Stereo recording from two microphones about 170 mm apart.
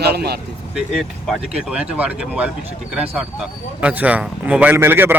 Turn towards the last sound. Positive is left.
turn(degrees=-15)  # may be behind; listen again after turning